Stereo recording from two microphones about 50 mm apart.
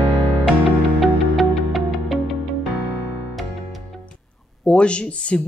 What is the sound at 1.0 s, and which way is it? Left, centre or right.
Music, centre.